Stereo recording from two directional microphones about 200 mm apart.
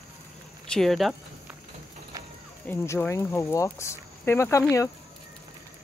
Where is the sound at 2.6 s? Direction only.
10° left (ahead or behind).